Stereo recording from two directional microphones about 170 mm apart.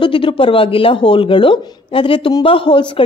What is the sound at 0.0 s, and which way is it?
Speech, 30° left (ahead or behind).